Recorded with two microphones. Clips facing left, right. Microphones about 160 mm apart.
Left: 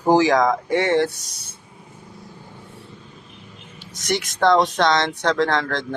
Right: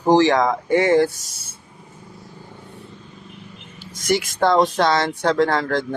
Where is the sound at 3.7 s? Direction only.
Centre (ahead or behind).